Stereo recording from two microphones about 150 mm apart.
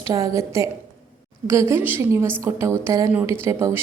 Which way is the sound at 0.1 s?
20° right (ahead or behind).